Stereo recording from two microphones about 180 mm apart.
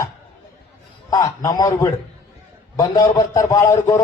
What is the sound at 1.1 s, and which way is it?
A man's voice, 20° left (ahead or behind).